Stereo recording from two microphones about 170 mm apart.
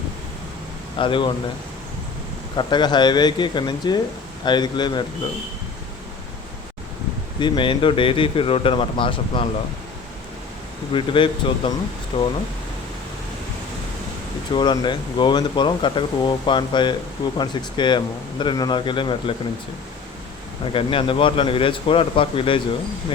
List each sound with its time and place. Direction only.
0.9 s speech: 30° left (ahead or behind)
2.6 s speech: 25° left (ahead or behind)
7.3 s speech: 30° left (ahead or behind)
10.9 s speech: 30° left (ahead or behind)
14.5 s speech: 25° left (ahead or behind)
20.7 s speech: 30° left (ahead or behind)